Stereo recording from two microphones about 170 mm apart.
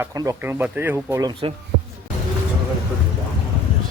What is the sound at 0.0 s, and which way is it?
Speech, 20° right (ahead or behind).